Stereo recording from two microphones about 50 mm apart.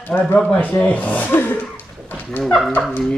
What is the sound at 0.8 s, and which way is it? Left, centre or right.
Speech, left.